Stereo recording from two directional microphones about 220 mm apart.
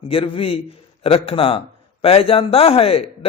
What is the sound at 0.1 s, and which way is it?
A man's voice, 25° left (ahead or behind).